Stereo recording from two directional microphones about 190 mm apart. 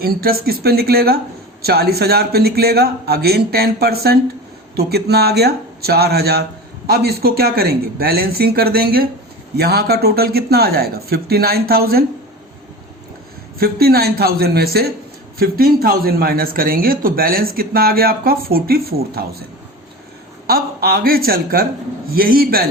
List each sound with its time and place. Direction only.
0.0 s a man's voice: 55° right (ahead or behind)
13.6 s a man's voice: 55° right (ahead or behind)
20.5 s speech: 50° right (ahead or behind)